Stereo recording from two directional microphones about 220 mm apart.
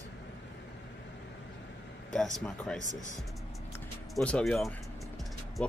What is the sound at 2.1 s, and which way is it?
Speech, centre (ahead or behind).